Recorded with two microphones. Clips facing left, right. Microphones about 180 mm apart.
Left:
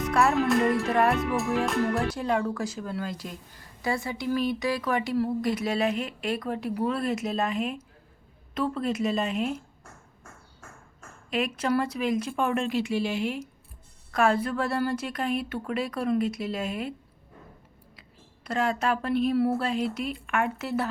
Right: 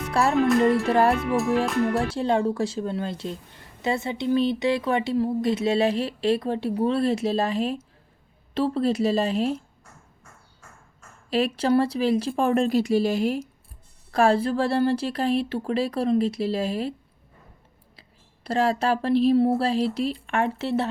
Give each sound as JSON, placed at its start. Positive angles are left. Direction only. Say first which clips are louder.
{"t": 0.1, "sound": "speech", "louder": "right 1 dB", "side_deg": -30}
{"t": 0.4, "sound": "music", "louder": "right 4 dB", "side_deg": 0}
{"t": 0.9, "sound": "speech", "louder": "right 3 dB", "side_deg": -30}
{"t": 1.6, "sound": "music", "louder": "right 3 dB", "side_deg": 0}
{"t": 2.0, "sound": "speech", "louder": "right 4 dB", "side_deg": -30}
{"t": 11.3, "sound": "speech", "louder": "right 5 dB", "side_deg": -35}
{"t": 18.4, "sound": "speech", "louder": "right 4 dB", "side_deg": -35}